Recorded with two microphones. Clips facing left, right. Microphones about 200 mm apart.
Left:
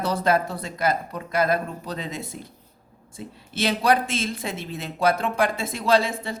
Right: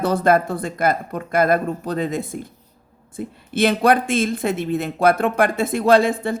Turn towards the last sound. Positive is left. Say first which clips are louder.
# right 6 dB
turn(degrees=-55)  # may be behind; listen again after turning